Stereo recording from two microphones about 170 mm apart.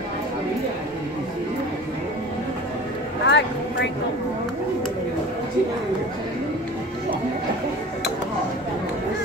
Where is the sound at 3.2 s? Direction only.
90° left.